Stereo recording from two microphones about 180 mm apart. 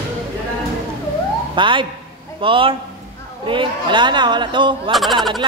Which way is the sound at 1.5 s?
25° right (ahead or behind).